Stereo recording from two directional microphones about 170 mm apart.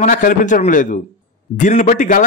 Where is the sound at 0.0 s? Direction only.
55° left (ahead or behind).